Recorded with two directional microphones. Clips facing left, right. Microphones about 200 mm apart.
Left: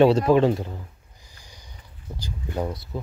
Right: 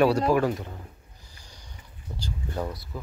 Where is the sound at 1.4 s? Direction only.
10° left (ahead or behind).